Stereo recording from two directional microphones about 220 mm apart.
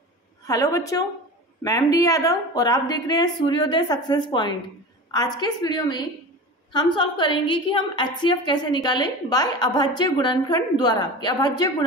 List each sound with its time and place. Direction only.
0.5 s a woman's voice: 15° left (ahead or behind)